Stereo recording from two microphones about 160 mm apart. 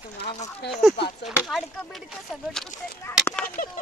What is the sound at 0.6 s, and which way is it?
Speech, 90° left.